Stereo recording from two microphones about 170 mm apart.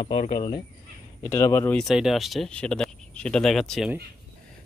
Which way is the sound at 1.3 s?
15° left (ahead or behind).